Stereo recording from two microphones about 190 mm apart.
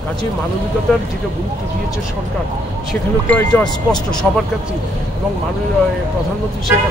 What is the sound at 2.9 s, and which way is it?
Speech, 5° left (ahead or behind).